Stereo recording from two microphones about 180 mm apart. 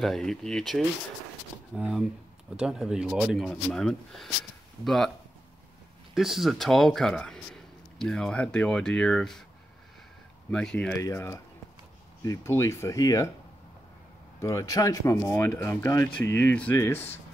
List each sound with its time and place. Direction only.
0.0 s speech: centre (ahead or behind)
6.1 s speech: centre (ahead or behind)
10.5 s speech: 5° left (ahead or behind)
14.4 s speech: 15° left (ahead or behind)